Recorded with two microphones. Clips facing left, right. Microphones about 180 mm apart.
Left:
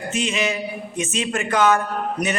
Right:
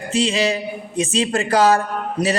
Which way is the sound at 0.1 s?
35° right (ahead or behind).